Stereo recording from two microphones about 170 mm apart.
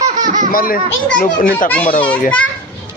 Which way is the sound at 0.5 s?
55° left (ahead or behind).